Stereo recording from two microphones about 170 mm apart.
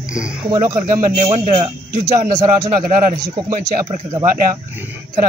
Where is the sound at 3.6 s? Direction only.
45° right (ahead or behind).